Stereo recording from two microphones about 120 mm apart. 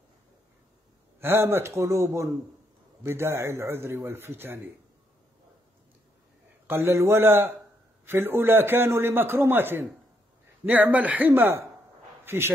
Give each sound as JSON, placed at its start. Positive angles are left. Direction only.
{"t": 1.2, "sound": "a man's voice", "side_deg": -20}
{"t": 6.7, "sound": "a man's voice", "side_deg": -20}